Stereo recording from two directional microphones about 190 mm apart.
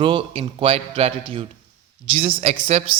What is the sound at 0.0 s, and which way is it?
A man's voice, 25° right (ahead or behind).